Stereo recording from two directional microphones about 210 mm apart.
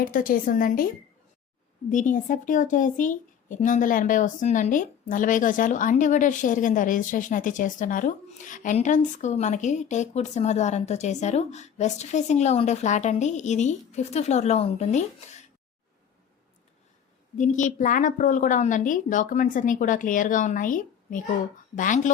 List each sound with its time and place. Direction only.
0.0 s speech: 40° left (ahead or behind)
17.3 s speech: 35° left (ahead or behind)